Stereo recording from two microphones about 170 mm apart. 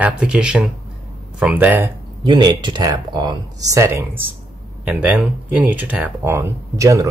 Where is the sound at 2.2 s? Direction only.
25° right (ahead or behind).